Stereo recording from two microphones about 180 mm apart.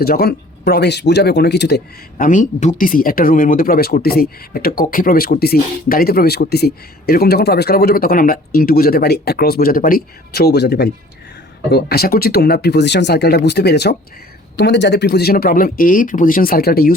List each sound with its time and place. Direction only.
0.0 s speech: 60° left (ahead or behind)